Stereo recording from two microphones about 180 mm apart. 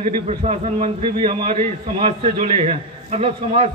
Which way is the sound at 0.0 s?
30° right (ahead or behind).